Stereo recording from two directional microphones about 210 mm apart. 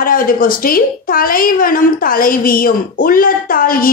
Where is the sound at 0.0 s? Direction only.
40° left (ahead or behind).